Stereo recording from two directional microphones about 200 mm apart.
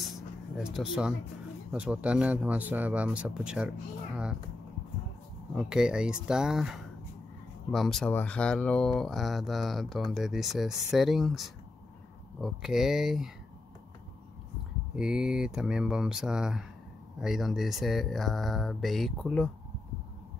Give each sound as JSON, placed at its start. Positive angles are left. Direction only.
{"t": 0.0, "sound": "a sound", "side_deg": 0}
{"t": 1.7, "sound": "a man's voice", "side_deg": -5}
{"t": 5.5, "sound": "speech", "side_deg": -5}
{"t": 15.0, "sound": "speech", "side_deg": 0}